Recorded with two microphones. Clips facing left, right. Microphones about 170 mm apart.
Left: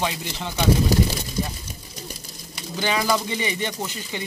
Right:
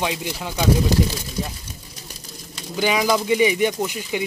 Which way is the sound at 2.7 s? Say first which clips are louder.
Right 3 dB; 10° right (ahead or behind).